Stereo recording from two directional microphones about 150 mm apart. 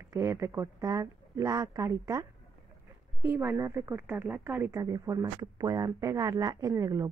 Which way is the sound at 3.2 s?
15° right (ahead or behind).